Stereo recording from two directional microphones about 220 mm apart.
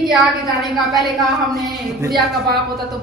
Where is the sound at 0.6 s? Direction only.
Centre (ahead or behind).